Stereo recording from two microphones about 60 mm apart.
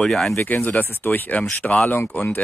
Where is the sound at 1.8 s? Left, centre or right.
Left.